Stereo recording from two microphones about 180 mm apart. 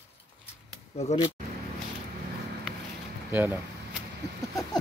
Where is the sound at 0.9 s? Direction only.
35° left (ahead or behind).